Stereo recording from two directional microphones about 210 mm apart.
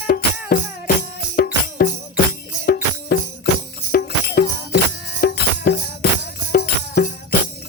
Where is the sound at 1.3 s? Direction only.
45° left (ahead or behind).